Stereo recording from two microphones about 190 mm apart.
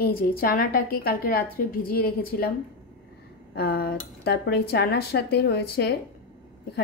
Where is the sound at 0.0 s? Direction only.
50° left (ahead or behind).